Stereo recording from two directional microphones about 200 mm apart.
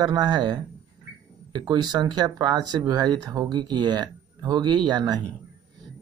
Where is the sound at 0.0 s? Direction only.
20° right (ahead or behind).